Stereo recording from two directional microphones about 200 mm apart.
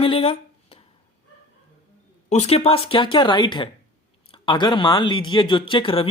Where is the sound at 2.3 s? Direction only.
30° left (ahead or behind).